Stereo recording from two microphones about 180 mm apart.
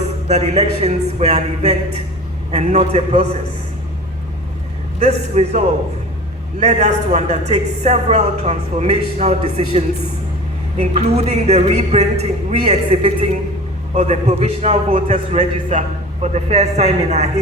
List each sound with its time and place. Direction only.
0.3 s a woman's voice: 40° right (ahead or behind)
4.9 s a woman's voice: 35° right (ahead or behind)